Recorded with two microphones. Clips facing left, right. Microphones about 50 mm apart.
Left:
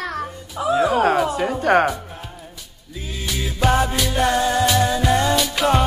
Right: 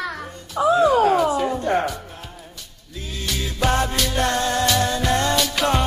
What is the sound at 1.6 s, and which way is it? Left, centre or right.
Music, left.